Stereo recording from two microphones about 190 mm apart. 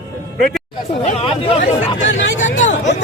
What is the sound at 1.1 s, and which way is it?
Speech, 30° left (ahead or behind).